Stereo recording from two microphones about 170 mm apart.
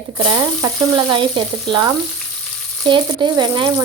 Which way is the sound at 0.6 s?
30° right (ahead or behind).